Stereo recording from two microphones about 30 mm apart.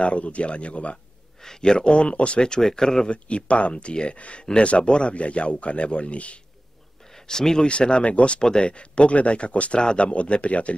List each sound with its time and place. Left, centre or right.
0.0 s a man's voice: left
1.6 s speech: left
2.4 s speech: left
3.1 s speech: left
5.1 s a man's voice: left
7.2 s speech: left
7.6 s a man's voice: left